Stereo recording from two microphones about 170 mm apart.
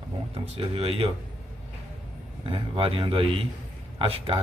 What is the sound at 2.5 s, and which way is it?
A man's voice, 35° right (ahead or behind).